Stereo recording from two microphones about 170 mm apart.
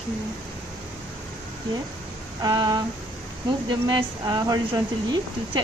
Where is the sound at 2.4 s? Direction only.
25° right (ahead or behind).